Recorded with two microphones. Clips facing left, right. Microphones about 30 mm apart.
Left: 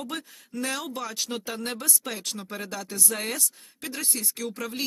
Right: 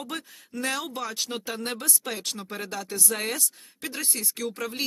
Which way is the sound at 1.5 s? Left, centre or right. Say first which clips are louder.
Right 1 dB; centre.